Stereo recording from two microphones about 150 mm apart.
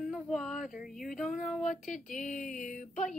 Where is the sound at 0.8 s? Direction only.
Centre (ahead or behind).